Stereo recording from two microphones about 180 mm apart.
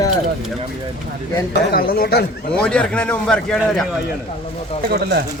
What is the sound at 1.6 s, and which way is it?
Speech, 60° left (ahead or behind).